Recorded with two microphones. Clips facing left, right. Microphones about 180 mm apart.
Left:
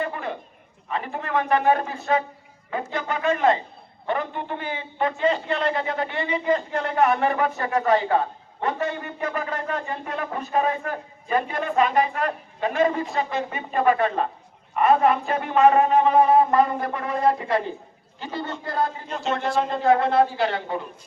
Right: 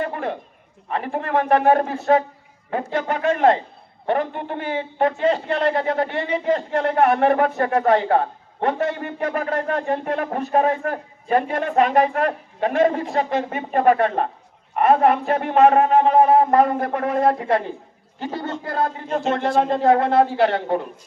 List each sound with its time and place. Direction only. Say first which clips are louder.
0.0 s a sound: right 3 dB; 55° right (ahead or behind)
0.9 s a man's voice: right 4 dB; 55° right (ahead or behind)
18.2 s a man's voice: right 4 dB; 45° right (ahead or behind)
20.3 s a man's voice: right 6 dB; 65° right (ahead or behind)